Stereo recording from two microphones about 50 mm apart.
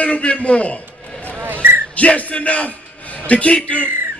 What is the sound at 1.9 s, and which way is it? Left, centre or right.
A man's voice, left.